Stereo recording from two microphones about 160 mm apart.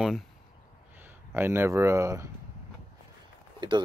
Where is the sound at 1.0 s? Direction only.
15° right (ahead or behind).